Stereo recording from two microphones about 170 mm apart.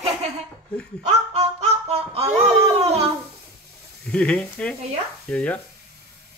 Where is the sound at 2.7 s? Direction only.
35° right (ahead or behind).